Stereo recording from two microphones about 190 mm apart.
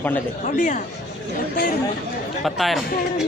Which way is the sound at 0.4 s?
40° left (ahead or behind).